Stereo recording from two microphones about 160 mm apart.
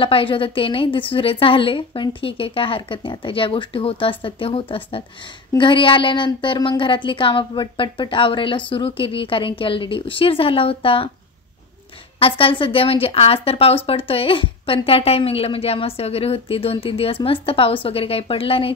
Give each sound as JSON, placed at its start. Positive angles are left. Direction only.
{"t": 0.0, "sound": "a woman's voice", "side_deg": 35}
{"t": 12.2, "sound": "a woman's voice", "side_deg": 35}